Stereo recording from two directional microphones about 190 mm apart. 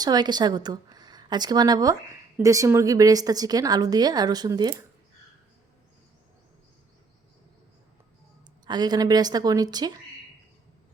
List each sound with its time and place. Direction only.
0.0 s a woman's voice: 20° right (ahead or behind)
8.6 s a woman's voice: 20° right (ahead or behind)